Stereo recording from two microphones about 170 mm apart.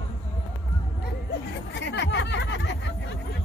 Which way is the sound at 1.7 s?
90° left.